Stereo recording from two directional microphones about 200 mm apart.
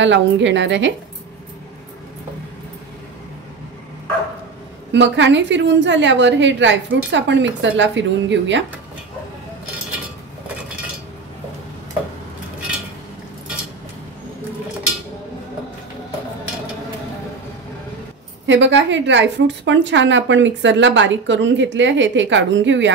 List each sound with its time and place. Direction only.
0.0 s a woman's voice: 65° right (ahead or behind)
4.9 s a woman's voice: 65° right (ahead or behind)
18.5 s a woman's voice: 65° right (ahead or behind)